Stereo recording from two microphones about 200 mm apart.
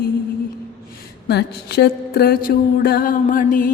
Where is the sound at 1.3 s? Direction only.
55° left (ahead or behind).